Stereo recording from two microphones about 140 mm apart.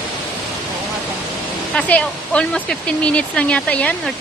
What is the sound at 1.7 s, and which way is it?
Speech, 5° left (ahead or behind).